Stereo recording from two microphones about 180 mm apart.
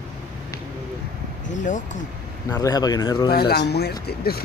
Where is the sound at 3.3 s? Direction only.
60° left (ahead or behind).